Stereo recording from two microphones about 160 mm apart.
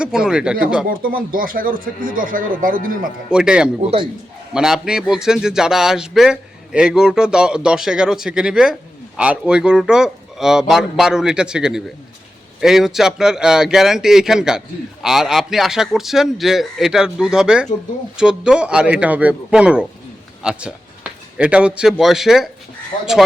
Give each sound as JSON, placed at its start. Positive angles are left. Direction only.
{"t": 0.0, "sound": "speech", "side_deg": -5}
{"t": 0.9, "sound": "speech", "side_deg": -65}
{"t": 3.2, "sound": "a man's voice", "side_deg": -5}